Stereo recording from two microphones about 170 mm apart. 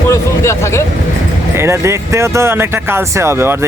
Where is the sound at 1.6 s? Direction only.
15° right (ahead or behind).